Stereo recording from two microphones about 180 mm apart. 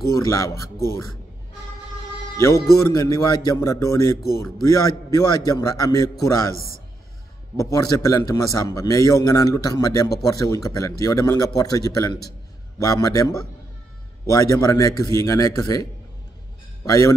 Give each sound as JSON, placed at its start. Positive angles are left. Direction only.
{"t": 0.1, "sound": "a man's voice", "side_deg": 15}
{"t": 2.3, "sound": "a man's voice", "side_deg": 15}
{"t": 7.5, "sound": "a man's voice", "side_deg": 15}